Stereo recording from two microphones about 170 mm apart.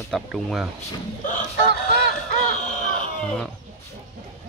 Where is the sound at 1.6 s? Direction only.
75° right (ahead or behind).